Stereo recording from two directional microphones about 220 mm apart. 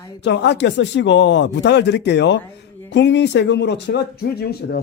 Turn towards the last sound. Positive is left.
turn(degrees=45)  # may be behind; listen again after turning